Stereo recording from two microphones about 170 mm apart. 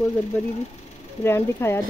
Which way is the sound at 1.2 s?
15° left (ahead or behind).